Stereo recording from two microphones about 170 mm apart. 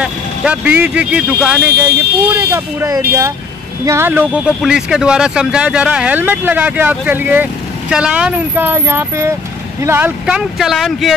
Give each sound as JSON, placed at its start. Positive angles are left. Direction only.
{"t": 0.0, "sound": "speech", "side_deg": -5}